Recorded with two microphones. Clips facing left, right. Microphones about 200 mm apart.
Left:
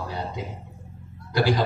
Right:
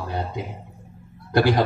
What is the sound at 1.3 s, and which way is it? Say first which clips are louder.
Speech: right 4 dB; 55° right (ahead or behind).